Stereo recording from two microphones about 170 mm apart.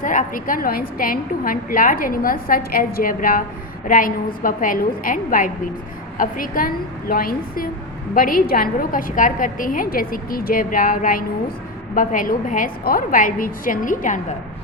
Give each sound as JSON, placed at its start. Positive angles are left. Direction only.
{"t": 0.0, "sound": "a woman's voice", "side_deg": 50}